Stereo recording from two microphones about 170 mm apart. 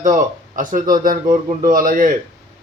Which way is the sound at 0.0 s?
50° right (ahead or behind).